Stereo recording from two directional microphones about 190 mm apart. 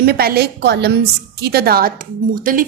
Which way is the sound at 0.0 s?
55° right (ahead or behind).